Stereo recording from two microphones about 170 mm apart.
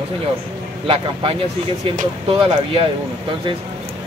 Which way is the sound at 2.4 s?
30° right (ahead or behind).